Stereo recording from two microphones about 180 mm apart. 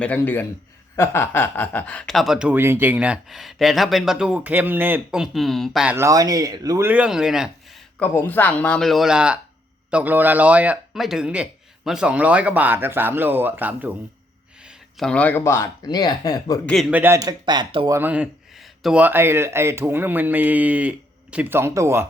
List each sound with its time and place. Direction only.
0.0 s speech: 10° left (ahead or behind)
7.9 s speech: 10° left (ahead or behind); by 13.9 s 10° right (ahead or behind)
14.9 s speech: 5° left (ahead or behind); by 16.6 s 20° left (ahead or behind)
16.9 s speech: 10° right (ahead or behind)
17.9 s speech: 10° right (ahead or behind)